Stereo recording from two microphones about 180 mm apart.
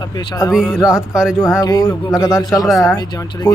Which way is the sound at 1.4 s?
20° left (ahead or behind).